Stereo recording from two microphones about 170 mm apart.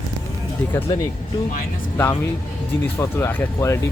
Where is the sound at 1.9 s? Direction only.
15° left (ahead or behind).